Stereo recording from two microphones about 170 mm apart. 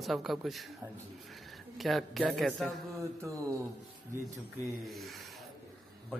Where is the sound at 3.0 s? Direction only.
20° right (ahead or behind).